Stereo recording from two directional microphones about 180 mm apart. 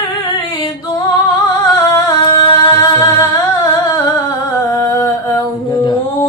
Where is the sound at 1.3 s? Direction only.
20° left (ahead or behind).